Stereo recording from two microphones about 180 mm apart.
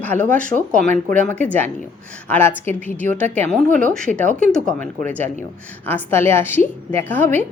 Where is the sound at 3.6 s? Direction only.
45° right (ahead or behind).